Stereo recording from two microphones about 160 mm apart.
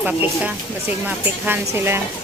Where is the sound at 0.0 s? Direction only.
10° right (ahead or behind).